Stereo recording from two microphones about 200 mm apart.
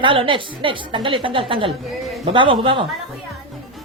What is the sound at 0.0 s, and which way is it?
A woman's voice, 25° right (ahead or behind).